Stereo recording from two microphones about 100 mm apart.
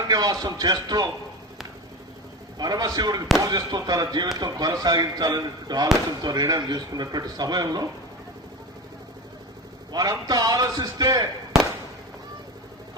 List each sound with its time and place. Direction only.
0.1 s a man's voice: 45° right (ahead or behind)
2.6 s speech: 40° right (ahead or behind)
9.9 s a man's voice: 40° right (ahead or behind)